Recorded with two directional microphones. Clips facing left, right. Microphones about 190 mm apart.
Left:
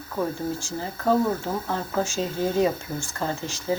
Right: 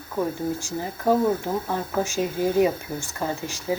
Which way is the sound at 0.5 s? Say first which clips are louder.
Right 2 dB; 15° right (ahead or behind).